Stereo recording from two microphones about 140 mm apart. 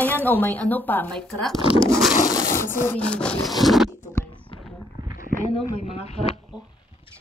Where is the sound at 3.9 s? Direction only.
20° left (ahead or behind).